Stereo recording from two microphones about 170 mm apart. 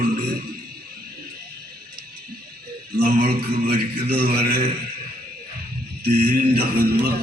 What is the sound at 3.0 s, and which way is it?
Music, 65° right (ahead or behind).